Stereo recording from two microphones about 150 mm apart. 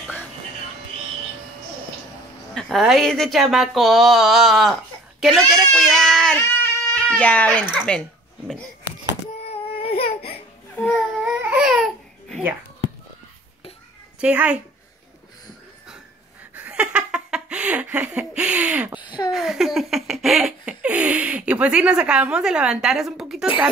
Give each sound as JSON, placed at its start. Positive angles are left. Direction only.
{"t": 2.5, "sound": "laughter", "side_deg": 0}
{"t": 6.4, "sound": "a sound", "side_deg": 15}
{"t": 7.1, "sound": "speech", "side_deg": 10}
{"t": 7.9, "sound": "laughter", "side_deg": 5}
{"t": 9.5, "sound": "a sound", "side_deg": 40}
{"t": 10.8, "sound": "baby cry", "side_deg": 0}
{"t": 11.3, "sound": "baby cry", "side_deg": -10}
{"t": 14.2, "sound": "a woman's voice", "side_deg": -10}
{"t": 16.5, "sound": "laughter", "side_deg": -10}
{"t": 18.9, "sound": "a sound", "side_deg": 30}
{"t": 19.3, "sound": "laughter", "side_deg": 0}